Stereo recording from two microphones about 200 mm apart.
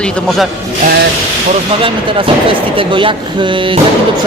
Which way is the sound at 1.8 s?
25° right (ahead or behind).